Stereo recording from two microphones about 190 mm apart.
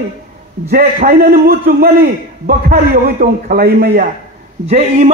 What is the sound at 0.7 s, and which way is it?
A man's voice, 50° right (ahead or behind).